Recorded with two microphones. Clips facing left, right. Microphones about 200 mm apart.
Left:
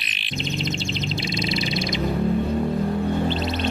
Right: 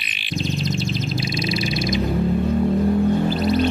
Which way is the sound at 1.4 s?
25° left (ahead or behind).